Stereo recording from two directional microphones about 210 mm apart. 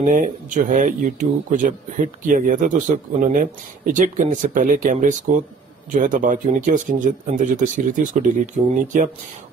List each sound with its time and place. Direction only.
0.0 s speech: 40° right (ahead or behind)